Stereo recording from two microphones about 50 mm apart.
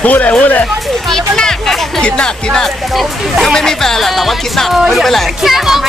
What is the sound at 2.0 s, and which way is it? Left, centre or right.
Speech, centre.